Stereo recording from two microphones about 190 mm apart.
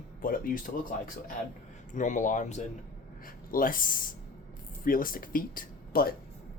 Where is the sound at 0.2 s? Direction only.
50° left (ahead or behind).